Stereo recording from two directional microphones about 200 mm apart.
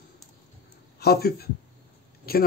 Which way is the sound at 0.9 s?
50° left (ahead or behind).